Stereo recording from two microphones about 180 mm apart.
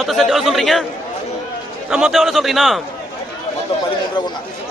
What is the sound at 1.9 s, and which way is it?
Speech, centre (ahead or behind).